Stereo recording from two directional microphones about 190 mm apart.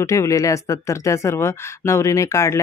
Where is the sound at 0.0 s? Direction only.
15° left (ahead or behind).